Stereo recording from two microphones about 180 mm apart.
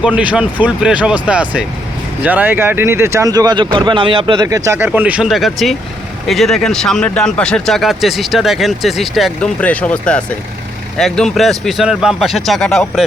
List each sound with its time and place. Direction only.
0.0 s speech: 5° right (ahead or behind)